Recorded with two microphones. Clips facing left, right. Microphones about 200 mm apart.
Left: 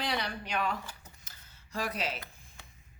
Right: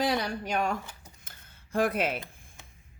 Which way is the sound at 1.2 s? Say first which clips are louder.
Right 3 dB; 55° right (ahead or behind).